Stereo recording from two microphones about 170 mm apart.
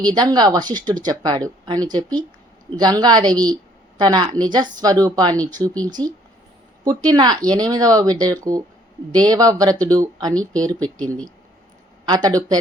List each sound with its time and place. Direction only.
0.0 s a woman's voice: 25° right (ahead or behind)
10.3 s speech: 5° left (ahead or behind)
12.0 s a woman's voice: 25° right (ahead or behind)